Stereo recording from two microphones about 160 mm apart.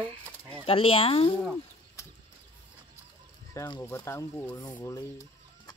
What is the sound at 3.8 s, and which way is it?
Speech, 15° left (ahead or behind).